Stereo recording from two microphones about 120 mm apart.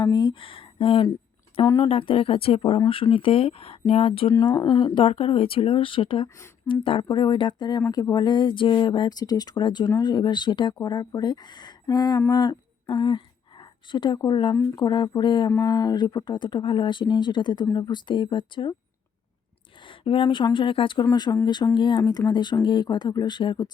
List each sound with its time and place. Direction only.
0.0 s a sound: 35° left (ahead or behind)
1.6 s speech: 25° left (ahead or behind)
1.9 s speech: 50° left (ahead or behind)
6.2 s speech: 25° left (ahead or behind)
6.7 s speech: 45° left (ahead or behind)
12.4 s a sound: 35° left (ahead or behind)
14.3 s speech: 40° left (ahead or behind)
19.8 s speech: 45° left (ahead or behind)